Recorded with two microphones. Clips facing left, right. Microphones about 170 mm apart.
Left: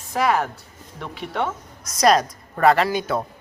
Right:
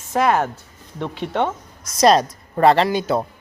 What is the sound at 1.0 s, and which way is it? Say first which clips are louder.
Speech: right 4 dB; 25° right (ahead or behind).